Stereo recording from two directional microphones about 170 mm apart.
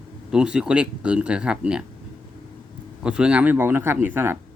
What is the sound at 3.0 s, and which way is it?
Speech, 5° right (ahead or behind).